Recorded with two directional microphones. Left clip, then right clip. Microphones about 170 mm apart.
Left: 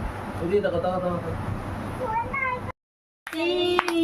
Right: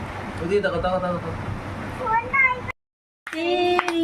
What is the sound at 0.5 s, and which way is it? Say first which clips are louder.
Speech: right 2 dB; 10° right (ahead or behind).